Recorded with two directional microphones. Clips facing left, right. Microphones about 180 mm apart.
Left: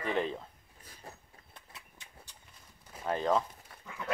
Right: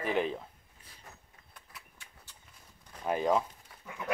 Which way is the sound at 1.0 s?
25° left (ahead or behind).